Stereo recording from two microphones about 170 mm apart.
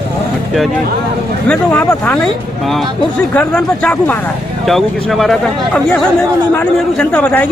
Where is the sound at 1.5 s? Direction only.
5° left (ahead or behind).